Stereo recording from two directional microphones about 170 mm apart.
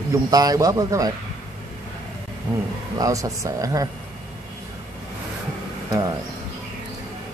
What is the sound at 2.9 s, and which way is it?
Speech, 20° right (ahead or behind).